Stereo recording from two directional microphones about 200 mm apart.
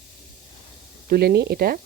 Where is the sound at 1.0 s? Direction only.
50° right (ahead or behind).